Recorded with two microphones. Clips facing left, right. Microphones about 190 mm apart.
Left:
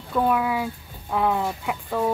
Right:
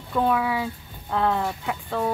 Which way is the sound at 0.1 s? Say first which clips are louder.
Left 1 dB; centre (ahead or behind).